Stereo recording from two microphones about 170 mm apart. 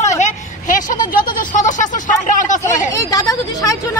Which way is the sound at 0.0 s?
45° left (ahead or behind).